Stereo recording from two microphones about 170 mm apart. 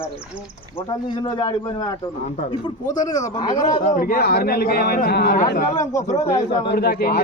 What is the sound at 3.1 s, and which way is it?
Speech, 25° left (ahead or behind).